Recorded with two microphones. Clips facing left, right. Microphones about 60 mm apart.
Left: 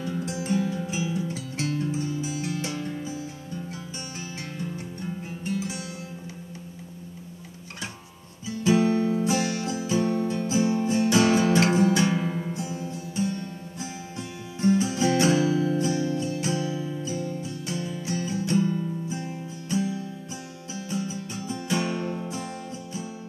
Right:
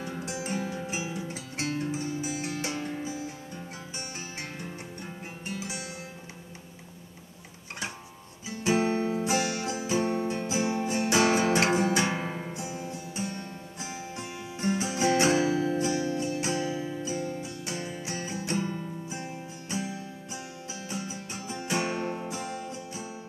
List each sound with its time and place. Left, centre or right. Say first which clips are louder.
0.2 s music: left 6 dB; right
8.5 s music: left 4 dB; right
12.4 s music: left 4 dB; right
22.3 s music: left 1 dB; left